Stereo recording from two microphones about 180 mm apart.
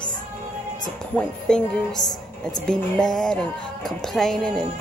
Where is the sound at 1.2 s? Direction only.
5° left (ahead or behind).